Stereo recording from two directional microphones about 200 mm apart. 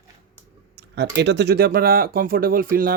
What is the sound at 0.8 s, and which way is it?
A man's voice, 55° right (ahead or behind).